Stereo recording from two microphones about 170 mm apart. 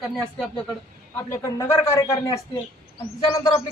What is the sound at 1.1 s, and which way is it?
Speech, 15° left (ahead or behind).